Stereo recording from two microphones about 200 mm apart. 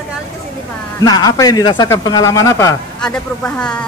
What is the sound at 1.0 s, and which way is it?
A man's voice, 20° left (ahead or behind).